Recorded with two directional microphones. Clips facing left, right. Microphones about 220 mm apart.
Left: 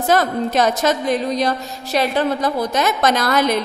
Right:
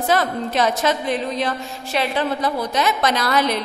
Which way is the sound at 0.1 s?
45° left (ahead or behind).